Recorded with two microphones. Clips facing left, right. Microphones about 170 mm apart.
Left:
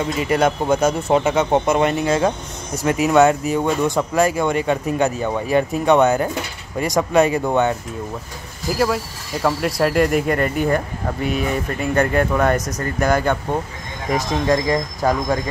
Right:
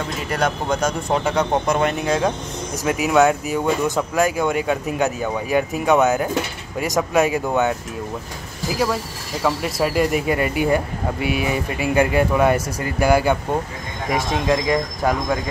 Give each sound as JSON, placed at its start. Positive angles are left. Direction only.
{"t": 0.2, "sound": "speech", "side_deg": 10}
{"t": 8.7, "sound": "speech", "side_deg": 0}